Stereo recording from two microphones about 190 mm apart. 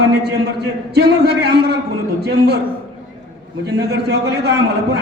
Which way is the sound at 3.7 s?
60° right (ahead or behind).